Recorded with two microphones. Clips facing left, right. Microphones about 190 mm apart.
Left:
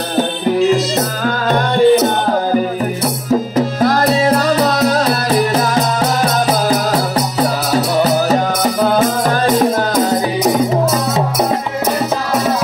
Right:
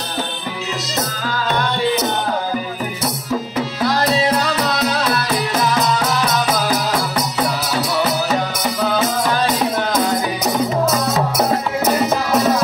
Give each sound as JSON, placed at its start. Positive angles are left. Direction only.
{"t": 1.5, "sound": "music", "side_deg": 50}
{"t": 3.5, "sound": "music", "side_deg": 50}
{"t": 7.7, "sound": "music", "side_deg": 40}